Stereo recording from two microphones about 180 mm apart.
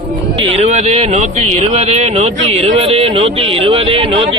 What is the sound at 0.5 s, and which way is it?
A man's voice, 40° right (ahead or behind).